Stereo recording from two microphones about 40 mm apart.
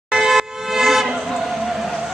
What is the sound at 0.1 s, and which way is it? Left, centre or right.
Vehicle horn, centre.